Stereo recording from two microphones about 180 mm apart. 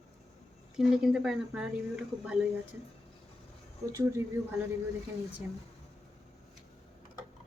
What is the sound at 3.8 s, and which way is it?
Speech, 15° right (ahead or behind).